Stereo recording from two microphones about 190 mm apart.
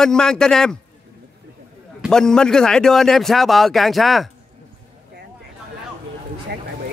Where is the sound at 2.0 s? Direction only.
5° left (ahead or behind).